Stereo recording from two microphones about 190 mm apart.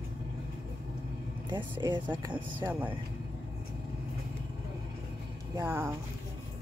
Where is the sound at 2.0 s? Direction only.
10° right (ahead or behind).